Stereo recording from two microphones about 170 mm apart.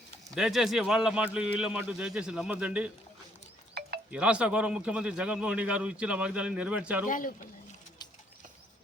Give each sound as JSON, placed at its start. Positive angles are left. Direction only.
{"t": 0.3, "sound": "a man's voice", "side_deg": -5}
{"t": 4.1, "sound": "a man's voice", "side_deg": -5}
{"t": 7.1, "sound": "speech", "side_deg": 50}